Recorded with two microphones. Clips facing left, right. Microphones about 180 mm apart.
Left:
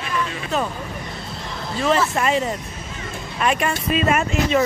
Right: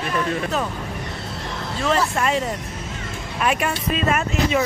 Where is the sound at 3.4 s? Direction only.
5° right (ahead or behind).